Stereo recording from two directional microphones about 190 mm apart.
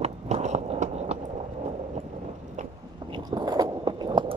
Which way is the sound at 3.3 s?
20° right (ahead or behind).